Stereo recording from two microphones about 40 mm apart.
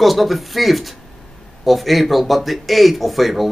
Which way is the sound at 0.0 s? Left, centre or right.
Centre.